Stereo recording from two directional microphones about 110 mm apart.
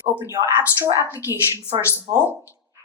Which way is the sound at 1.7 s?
55° right (ahead or behind).